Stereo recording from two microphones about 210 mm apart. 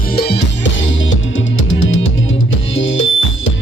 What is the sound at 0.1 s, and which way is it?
Music, 50° left (ahead or behind).